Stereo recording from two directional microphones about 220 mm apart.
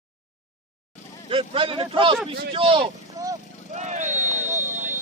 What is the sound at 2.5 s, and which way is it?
Vehicle, 25° right (ahead or behind).